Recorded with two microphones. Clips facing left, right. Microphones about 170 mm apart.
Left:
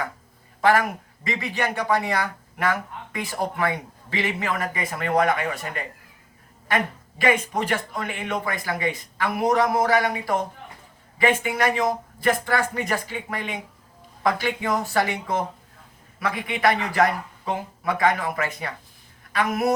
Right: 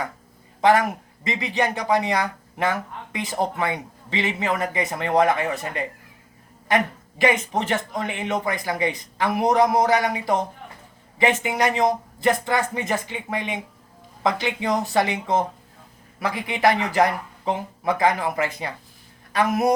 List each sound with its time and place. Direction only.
0.6 s speech: 20° right (ahead or behind)
7.5 s speech: 25° right (ahead or behind)
11.4 s speech: 20° right (ahead or behind)